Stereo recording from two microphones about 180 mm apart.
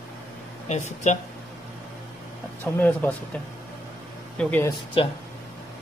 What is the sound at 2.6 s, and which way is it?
Speech, 10° left (ahead or behind).